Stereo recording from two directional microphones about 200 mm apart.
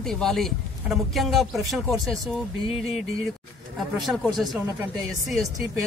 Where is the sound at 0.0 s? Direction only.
Centre (ahead or behind).